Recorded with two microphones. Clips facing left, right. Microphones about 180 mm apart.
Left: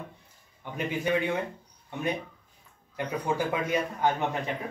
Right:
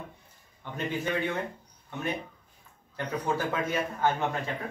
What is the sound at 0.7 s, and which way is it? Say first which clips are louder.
Speech: left 3 dB; 15° left (ahead or behind).